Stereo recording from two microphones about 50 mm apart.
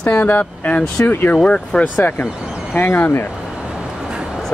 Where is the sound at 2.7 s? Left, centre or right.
Left.